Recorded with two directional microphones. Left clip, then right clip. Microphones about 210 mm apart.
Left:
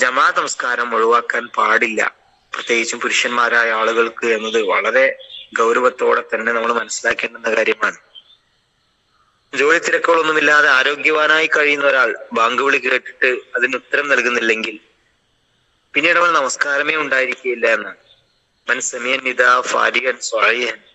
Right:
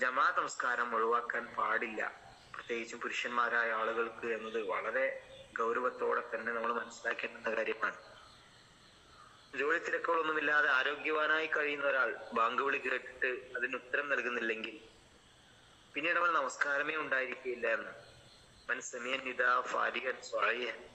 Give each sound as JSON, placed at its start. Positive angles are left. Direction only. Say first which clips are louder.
{"t": 0.0, "sound": "a man's voice", "louder": "left 17 dB", "side_deg": 50}
{"t": 9.5, "sound": "a man's voice", "louder": "left 19 dB", "side_deg": 50}
{"t": 15.9, "sound": "a man's voice", "louder": "left 18 dB", "side_deg": 50}